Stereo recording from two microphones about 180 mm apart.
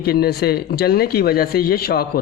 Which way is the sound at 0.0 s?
60° left (ahead or behind).